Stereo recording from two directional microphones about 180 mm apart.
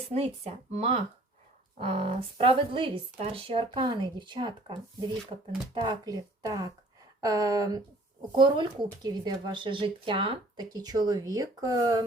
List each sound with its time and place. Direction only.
0.1 s speech: 35° right (ahead or behind)